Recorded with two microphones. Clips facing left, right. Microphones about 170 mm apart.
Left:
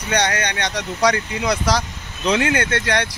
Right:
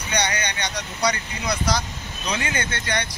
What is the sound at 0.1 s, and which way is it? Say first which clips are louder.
Speech: left 5 dB; 85° left.